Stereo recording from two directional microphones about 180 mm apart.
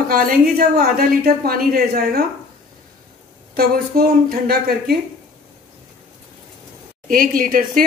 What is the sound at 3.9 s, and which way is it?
Speech, 55° right (ahead or behind).